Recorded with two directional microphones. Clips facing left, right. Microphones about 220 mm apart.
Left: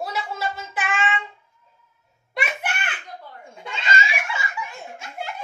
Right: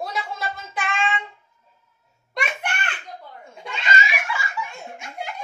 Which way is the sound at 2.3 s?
5° left (ahead or behind).